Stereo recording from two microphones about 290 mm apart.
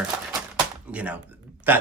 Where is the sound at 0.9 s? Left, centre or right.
Centre.